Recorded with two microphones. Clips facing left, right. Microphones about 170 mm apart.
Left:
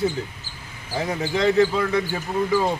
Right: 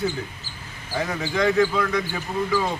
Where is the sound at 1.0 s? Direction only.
25° left (ahead or behind).